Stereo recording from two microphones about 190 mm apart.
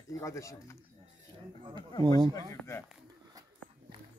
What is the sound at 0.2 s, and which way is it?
Speech, 15° left (ahead or behind).